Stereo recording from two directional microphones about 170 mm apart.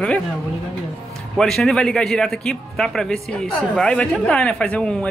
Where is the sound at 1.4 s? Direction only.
5° left (ahead or behind).